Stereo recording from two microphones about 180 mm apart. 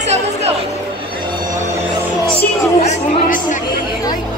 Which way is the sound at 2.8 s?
45° left (ahead or behind).